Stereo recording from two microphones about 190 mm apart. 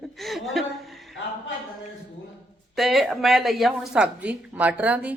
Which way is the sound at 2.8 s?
Centre (ahead or behind).